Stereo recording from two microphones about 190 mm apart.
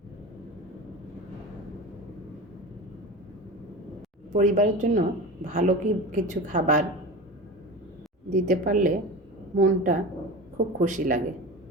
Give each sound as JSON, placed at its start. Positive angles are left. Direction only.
{"t": 4.3, "sound": "a woman's voice", "side_deg": -40}
{"t": 8.3, "sound": "a woman's voice", "side_deg": -45}